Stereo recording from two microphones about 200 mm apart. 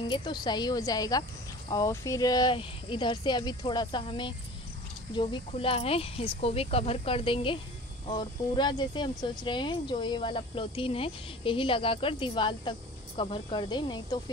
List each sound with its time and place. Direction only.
0.1 s speech: 20° left (ahead or behind)